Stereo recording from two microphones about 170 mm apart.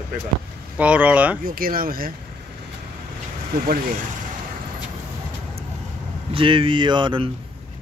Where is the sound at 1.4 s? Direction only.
60° right (ahead or behind).